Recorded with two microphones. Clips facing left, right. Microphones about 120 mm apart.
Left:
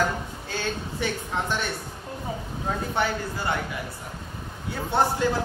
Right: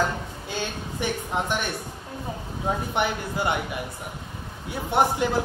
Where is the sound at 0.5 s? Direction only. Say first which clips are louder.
Left 1 dB; 15° right (ahead or behind).